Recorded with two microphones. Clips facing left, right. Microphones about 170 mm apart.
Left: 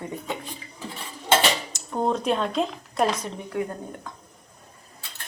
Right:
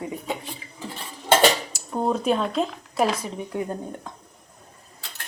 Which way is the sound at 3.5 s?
25° right (ahead or behind).